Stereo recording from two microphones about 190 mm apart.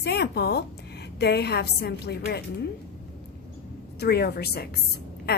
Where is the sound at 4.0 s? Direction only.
55° left (ahead or behind).